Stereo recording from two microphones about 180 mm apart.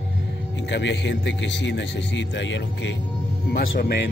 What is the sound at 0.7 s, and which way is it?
A man's voice, 85° left.